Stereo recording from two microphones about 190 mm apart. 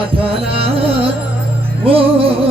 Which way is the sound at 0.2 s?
30° right (ahead or behind).